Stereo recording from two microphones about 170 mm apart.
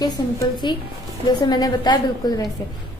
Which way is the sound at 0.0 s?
25° left (ahead or behind).